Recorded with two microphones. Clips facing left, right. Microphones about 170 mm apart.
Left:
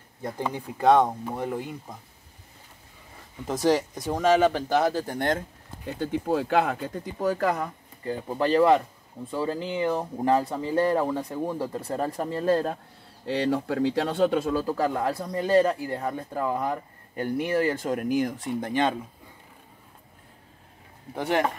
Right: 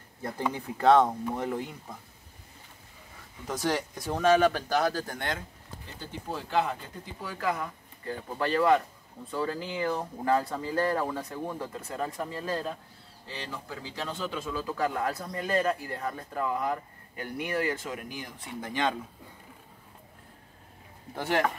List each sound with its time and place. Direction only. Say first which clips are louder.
0.2 s speech: left 1 dB; 15° left (ahead or behind)
4.0 s speech: even; 15° left (ahead or behind)
5.9 s speech: left 12 dB; 60° left (ahead or behind); by 7.7 s 40° left (ahead or behind)
8.1 s speech: left 6 dB; 25° left (ahead or behind); by 12.7 s 50° left (ahead or behind)
13.3 s speech: left 14 dB; 65° left (ahead or behind); by 17.7 s 35° left (ahead or behind)
17.7 s speech: left 12 dB; 50° left (ahead or behind)